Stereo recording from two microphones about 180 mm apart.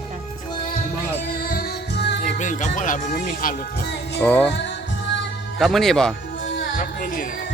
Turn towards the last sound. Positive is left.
turn(degrees=50)  # may be behind; listen again after turning